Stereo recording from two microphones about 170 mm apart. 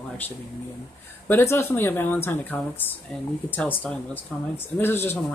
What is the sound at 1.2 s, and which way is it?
Speech, 15° left (ahead or behind).